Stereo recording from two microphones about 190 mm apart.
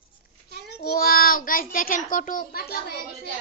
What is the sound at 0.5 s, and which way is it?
A child's voice, 60° left (ahead or behind).